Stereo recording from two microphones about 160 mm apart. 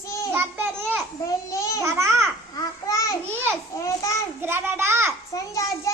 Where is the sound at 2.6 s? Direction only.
20° left (ahead or behind).